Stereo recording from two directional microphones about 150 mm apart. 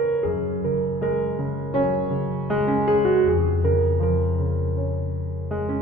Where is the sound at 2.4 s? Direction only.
Centre (ahead or behind).